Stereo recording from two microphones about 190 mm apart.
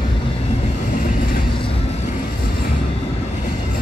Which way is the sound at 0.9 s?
45° left (ahead or behind).